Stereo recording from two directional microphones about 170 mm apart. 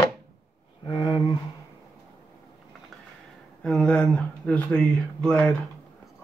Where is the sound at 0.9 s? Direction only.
25° left (ahead or behind).